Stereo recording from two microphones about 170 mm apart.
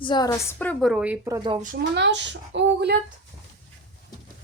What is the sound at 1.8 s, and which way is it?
Speech, 90° right.